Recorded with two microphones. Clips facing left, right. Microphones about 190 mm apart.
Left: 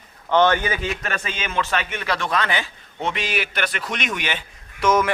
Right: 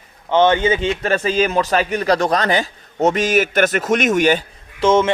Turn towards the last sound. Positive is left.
turn(degrees=-25)  # may be behind; listen again after turning